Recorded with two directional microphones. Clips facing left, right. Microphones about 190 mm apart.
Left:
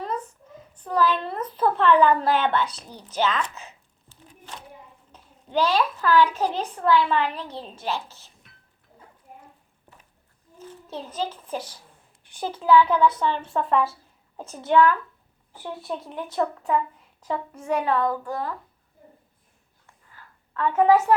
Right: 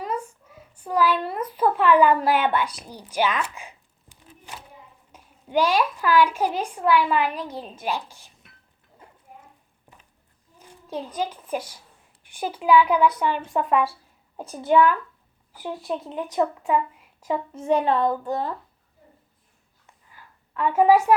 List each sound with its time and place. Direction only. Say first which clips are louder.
0.0 s a child's voice: right 1 dB; 10° right (ahead or behind)
10.6 s a child's voice: right 3 dB; 15° right (ahead or behind)
17.5 s a woman's voice: right 3 dB; 25° right (ahead or behind)
19.9 s a sound: even; 15° right (ahead or behind)